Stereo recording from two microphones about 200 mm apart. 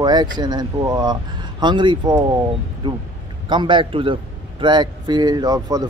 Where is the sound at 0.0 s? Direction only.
20° right (ahead or behind).